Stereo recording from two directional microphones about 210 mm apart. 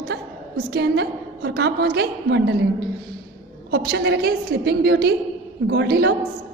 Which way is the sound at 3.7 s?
50° right (ahead or behind).